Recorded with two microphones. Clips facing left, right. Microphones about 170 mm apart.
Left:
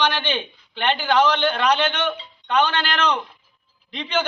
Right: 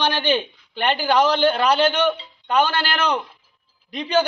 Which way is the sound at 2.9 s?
10° right (ahead or behind).